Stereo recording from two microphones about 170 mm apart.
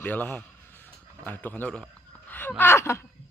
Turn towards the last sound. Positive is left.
turn(degrees=15)  # may be behind; listen again after turning